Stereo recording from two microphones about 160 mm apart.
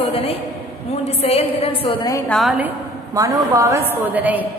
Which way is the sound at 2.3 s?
Centre (ahead or behind).